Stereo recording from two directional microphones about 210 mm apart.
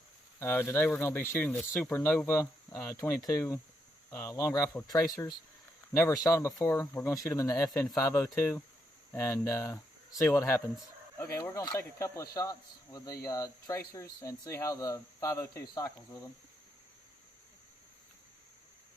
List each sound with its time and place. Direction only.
0.3 s speech: 10° left (ahead or behind)